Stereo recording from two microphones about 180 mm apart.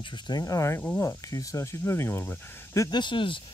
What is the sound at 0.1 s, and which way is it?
Speech, 20° left (ahead or behind).